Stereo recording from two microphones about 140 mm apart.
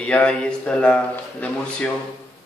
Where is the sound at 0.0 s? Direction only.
5° left (ahead or behind).